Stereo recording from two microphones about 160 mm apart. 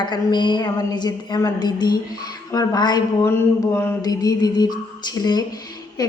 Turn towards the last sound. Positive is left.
turn(degrees=25)  # may be behind; listen again after turning